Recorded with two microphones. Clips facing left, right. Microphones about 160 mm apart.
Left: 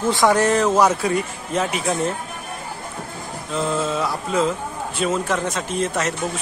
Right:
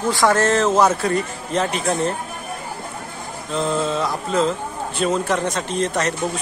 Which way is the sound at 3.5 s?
5° left (ahead or behind).